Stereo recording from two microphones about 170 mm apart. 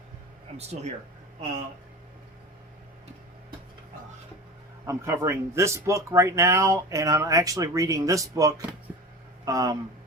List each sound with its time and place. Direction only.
0.5 s speech: 40° right (ahead or behind)
4.9 s speech: 15° right (ahead or behind)